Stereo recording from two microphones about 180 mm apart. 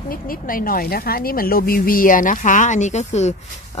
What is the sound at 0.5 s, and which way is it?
Speech, 50° left (ahead or behind).